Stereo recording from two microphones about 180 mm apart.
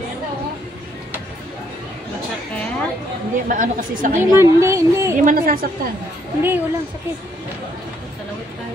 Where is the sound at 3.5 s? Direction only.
50° right (ahead or behind).